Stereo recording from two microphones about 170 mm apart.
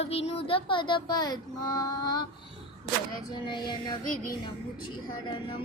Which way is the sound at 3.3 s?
25° left (ahead or behind).